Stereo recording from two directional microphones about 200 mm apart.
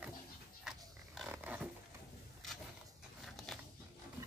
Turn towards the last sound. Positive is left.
turn(degrees=0)  # may be behind; listen again after turning